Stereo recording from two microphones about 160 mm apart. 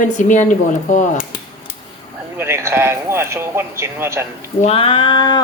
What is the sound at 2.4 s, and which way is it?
A man's voice, 15° right (ahead or behind).